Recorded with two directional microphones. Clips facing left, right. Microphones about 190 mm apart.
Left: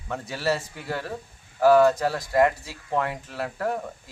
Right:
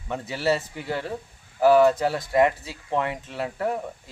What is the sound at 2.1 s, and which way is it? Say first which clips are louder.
Speech: right 1 dB; 20° right (ahead or behind).